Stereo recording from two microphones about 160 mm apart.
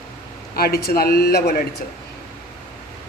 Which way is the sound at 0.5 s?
75° left (ahead or behind).